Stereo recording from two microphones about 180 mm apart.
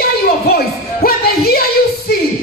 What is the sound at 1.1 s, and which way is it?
Music, 55° left (ahead or behind).